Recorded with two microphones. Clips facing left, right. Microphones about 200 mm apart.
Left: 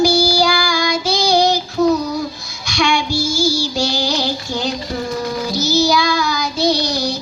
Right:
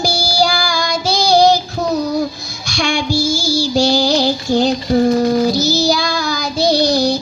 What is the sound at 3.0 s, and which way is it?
Child singing, 10° right (ahead or behind).